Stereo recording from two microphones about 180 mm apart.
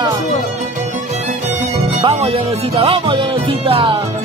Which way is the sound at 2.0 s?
35° right (ahead or behind).